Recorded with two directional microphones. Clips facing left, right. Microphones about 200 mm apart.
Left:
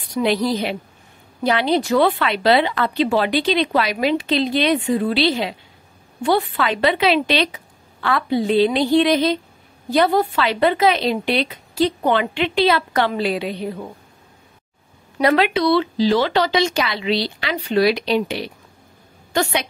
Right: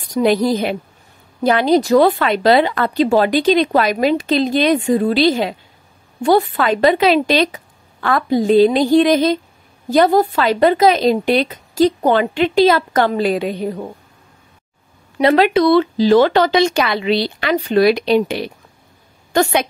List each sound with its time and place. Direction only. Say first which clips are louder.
0.0 s a woman's voice: right 4 dB; 45° right (ahead or behind)
15.3 s a woman's voice: right 6 dB; 45° right (ahead or behind)